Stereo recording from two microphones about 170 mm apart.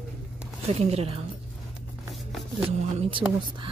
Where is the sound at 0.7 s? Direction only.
35° right (ahead or behind).